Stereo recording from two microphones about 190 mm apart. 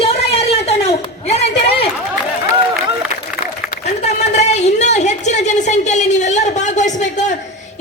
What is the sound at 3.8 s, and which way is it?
A man's voice, 35° left (ahead or behind).